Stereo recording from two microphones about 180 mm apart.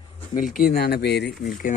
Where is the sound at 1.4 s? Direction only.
50° left (ahead or behind).